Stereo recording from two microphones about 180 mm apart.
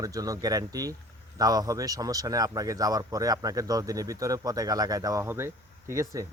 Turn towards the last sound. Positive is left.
turn(degrees=-15)  # may be behind; listen again after turning